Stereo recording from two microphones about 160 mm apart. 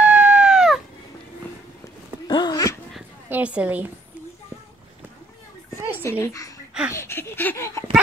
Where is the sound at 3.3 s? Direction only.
10° right (ahead or behind).